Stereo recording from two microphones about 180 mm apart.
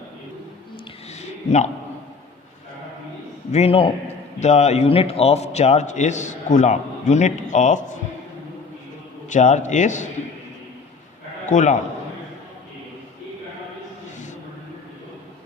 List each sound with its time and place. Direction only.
1.5 s a man's voice: 40° left (ahead or behind)
3.5 s a man's voice: 35° left (ahead or behind)
9.3 s a man's voice: 45° left (ahead or behind)
11.4 s a man's voice: 45° left (ahead or behind)